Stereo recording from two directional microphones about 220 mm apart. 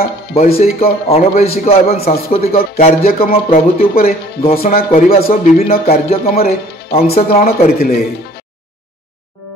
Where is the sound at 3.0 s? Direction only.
40° left (ahead or behind).